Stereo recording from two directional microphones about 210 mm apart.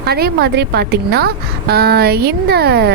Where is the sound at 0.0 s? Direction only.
50° right (ahead or behind).